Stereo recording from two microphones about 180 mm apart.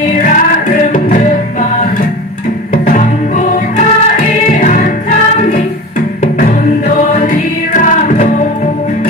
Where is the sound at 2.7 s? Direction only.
50° left (ahead or behind).